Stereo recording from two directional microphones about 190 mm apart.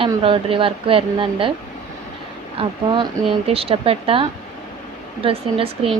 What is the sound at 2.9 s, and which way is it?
A woman's voice, 25° right (ahead or behind).